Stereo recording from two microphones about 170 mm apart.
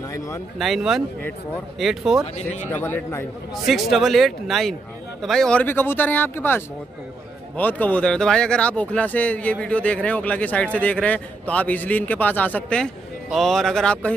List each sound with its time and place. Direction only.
0.1 s speech: 20° left (ahead or behind)
0.6 s speech: centre (ahead or behind)
2.3 s speech: 40° left (ahead or behind)
2.7 s speech: 10° left (ahead or behind)
3.6 s speech: centre (ahead or behind)